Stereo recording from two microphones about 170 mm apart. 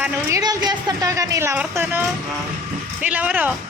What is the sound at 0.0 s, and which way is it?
A woman's voice, 20° right (ahead or behind).